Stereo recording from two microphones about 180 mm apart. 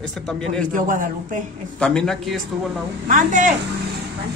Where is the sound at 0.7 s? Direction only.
50° right (ahead or behind).